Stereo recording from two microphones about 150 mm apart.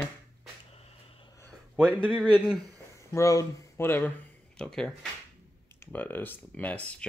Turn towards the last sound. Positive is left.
turn(degrees=10)  # may be behind; listen again after turning